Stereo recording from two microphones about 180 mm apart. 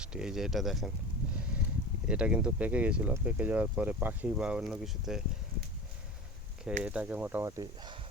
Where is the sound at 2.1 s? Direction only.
5° right (ahead or behind).